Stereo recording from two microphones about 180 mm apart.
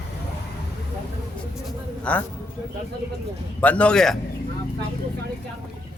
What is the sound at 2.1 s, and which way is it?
Speech, 5° left (ahead or behind).